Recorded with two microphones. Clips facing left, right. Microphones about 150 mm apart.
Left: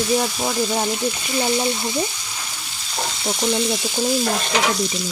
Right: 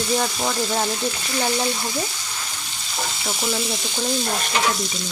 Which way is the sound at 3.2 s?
Centre (ahead or behind).